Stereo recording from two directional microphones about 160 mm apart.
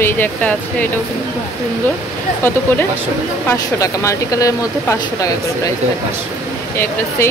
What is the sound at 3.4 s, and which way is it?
Speech, 20° left (ahead or behind).